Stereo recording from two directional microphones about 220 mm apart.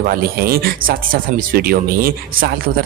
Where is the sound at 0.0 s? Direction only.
40° right (ahead or behind).